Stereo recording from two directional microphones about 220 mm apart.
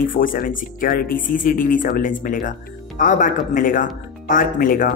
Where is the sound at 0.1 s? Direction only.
40° left (ahead or behind).